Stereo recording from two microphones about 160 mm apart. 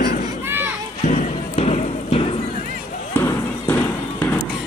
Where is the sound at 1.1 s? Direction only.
45° left (ahead or behind).